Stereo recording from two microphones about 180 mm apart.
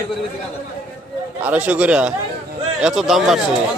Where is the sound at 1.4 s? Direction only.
10° right (ahead or behind).